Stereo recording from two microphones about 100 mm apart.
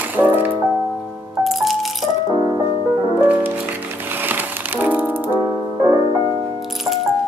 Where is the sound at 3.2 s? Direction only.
20° right (ahead or behind).